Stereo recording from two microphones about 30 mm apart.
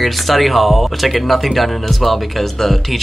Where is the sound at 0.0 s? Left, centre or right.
Centre.